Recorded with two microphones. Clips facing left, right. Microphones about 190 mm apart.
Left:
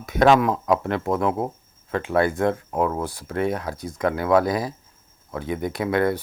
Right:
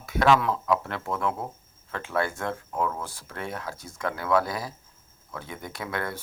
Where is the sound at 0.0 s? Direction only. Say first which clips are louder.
Left 5 dB; 20° left (ahead or behind).